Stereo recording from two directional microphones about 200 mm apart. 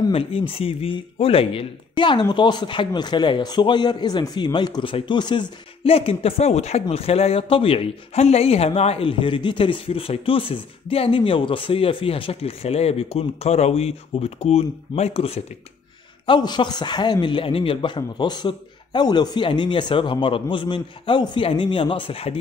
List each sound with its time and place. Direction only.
0.0 s speech: 30° left (ahead or behind)